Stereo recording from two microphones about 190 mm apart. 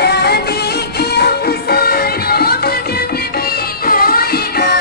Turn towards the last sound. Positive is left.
turn(degrees=55)  # may be behind; listen again after turning